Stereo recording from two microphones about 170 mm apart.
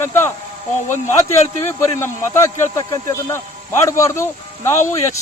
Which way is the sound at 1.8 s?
15° left (ahead or behind).